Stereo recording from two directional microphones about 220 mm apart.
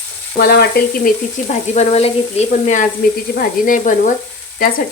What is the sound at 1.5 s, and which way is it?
Frying, 30° left (ahead or behind).